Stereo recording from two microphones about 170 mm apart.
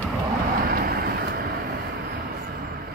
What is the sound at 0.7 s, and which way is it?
Vehicle, 65° right (ahead or behind).